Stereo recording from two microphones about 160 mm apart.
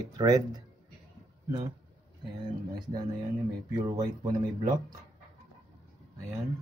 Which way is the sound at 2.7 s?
25° right (ahead or behind).